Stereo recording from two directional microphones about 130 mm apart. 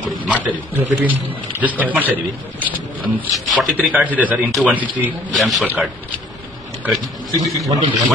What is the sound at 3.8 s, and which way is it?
A man's voice, 10° right (ahead or behind).